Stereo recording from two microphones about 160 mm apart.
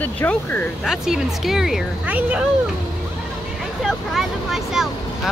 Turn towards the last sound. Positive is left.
turn(degrees=0)  # may be behind; listen again after turning